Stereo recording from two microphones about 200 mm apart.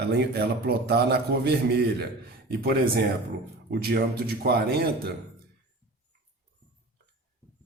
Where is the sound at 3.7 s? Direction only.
50° right (ahead or behind).